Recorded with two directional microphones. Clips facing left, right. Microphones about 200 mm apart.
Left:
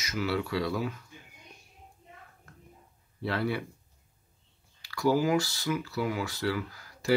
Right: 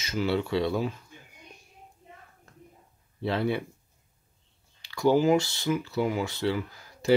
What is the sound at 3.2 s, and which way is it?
Speech, 25° right (ahead or behind).